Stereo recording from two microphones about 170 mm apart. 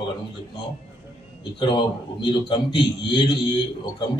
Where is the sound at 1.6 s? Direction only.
25° left (ahead or behind).